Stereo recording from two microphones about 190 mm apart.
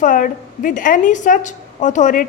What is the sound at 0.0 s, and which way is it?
A woman's voice, 45° left (ahead or behind).